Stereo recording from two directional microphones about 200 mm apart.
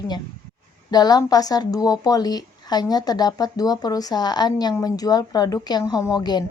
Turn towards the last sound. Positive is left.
turn(degrees=20)  # may be behind; listen again after turning